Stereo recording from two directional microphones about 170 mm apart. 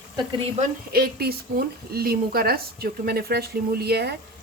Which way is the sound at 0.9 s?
65° right (ahead or behind).